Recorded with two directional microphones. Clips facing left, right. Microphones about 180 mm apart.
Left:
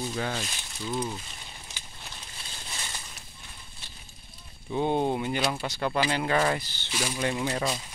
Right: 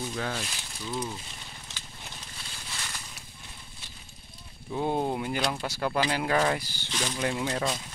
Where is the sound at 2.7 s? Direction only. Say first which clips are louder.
Left 1 dB; 20° left (ahead or behind).